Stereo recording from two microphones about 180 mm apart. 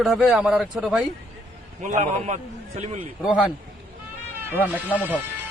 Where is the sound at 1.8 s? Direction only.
40° right (ahead or behind).